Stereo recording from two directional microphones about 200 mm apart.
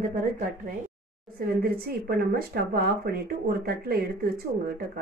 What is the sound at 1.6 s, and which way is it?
Speech, 50° right (ahead or behind).